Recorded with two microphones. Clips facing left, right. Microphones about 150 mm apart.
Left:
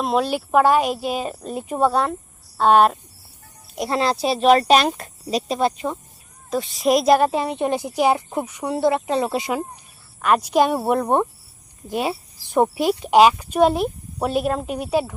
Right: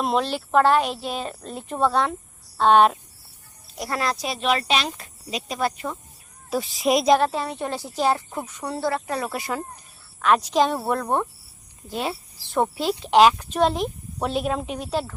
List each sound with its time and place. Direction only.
0.0 s speech: 5° left (ahead or behind)
3.8 s speech: 25° left (ahead or behind); by 5.4 s 45° left (ahead or behind)
5.5 s speech: 25° left (ahead or behind)
6.5 s speech: centre (ahead or behind)
7.3 s speech: 15° left (ahead or behind)